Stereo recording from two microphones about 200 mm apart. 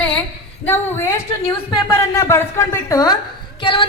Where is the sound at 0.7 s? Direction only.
10° left (ahead or behind).